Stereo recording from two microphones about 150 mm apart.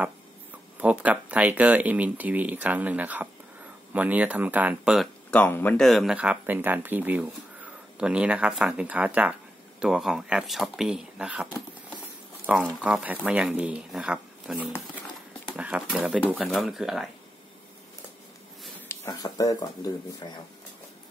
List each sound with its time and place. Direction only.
0.7 s speech: 10° right (ahead or behind)
5.3 s speech: 10° left (ahead or behind)
5.8 s speech: centre (ahead or behind)
12.5 s speech: 5° right (ahead or behind)
16.3 s speech: 10° left (ahead or behind)
16.5 s speech: centre (ahead or behind)
18.9 s speech: 25° left (ahead or behind)